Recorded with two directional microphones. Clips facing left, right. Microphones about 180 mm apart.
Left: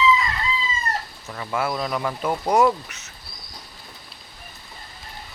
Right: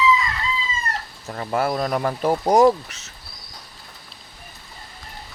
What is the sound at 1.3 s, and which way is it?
Speech, 40° right (ahead or behind).